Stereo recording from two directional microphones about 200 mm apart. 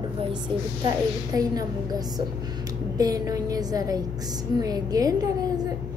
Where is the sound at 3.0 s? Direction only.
20° right (ahead or behind).